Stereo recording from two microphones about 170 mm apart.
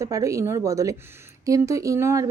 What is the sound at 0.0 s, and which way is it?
Speech, 20° right (ahead or behind).